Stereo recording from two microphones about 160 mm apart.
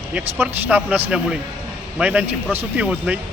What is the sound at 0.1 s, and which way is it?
Speech, 10° right (ahead or behind).